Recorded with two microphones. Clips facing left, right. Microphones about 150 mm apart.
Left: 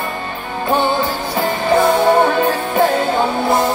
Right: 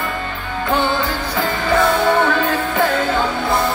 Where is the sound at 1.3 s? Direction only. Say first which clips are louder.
Left 3 dB; 25° left (ahead or behind).